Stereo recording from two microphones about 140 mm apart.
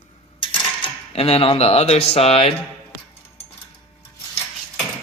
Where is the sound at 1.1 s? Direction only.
45° left (ahead or behind).